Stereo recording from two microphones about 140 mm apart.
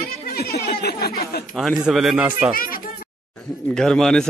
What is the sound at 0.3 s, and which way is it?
Speech, 90° left.